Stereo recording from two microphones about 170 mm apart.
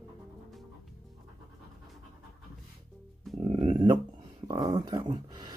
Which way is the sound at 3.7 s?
25° right (ahead or behind).